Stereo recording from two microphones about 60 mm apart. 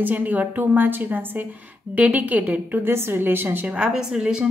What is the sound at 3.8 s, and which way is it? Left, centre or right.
Speech, centre.